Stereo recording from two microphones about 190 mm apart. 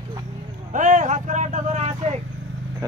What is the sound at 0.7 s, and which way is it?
Speech, 40° right (ahead or behind).